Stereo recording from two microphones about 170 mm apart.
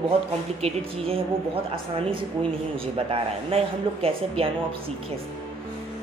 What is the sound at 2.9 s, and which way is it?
A woman's voice, 35° right (ahead or behind).